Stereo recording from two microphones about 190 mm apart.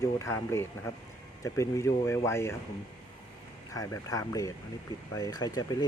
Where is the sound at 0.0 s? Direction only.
15° left (ahead or behind).